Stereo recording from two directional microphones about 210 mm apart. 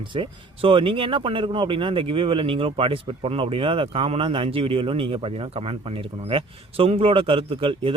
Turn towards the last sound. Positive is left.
turn(degrees=-25)  # may be behind; listen again after turning